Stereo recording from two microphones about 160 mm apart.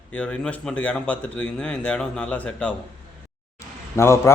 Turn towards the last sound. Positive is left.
turn(degrees=15)  # may be behind; listen again after turning